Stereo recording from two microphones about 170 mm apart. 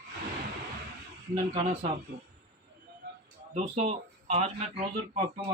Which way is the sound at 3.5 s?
40° right (ahead or behind).